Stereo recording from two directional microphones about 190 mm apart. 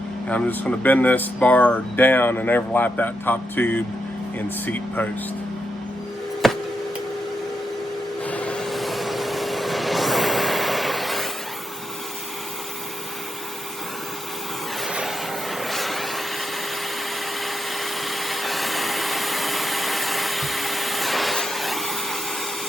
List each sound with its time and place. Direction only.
0.3 s speech: 10° left (ahead or behind)
6.4 s tick: centre (ahead or behind)
8.2 s vehicle: 5° left (ahead or behind)
14.8 s train: 5° right (ahead or behind)
15.6 s vehicle: centre (ahead or behind)
17.4 s vacuum cleaner: centre (ahead or behind)